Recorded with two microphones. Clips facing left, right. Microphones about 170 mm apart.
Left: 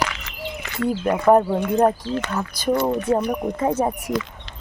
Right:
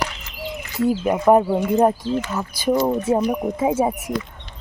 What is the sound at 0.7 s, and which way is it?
Speech, 5° right (ahead or behind).